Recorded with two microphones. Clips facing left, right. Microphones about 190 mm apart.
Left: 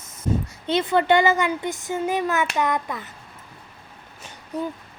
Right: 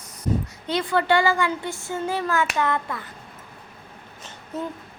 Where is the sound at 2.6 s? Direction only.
15° left (ahead or behind).